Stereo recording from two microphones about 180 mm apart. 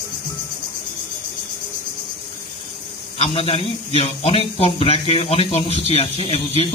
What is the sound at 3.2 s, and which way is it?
A man's voice, 30° left (ahead or behind).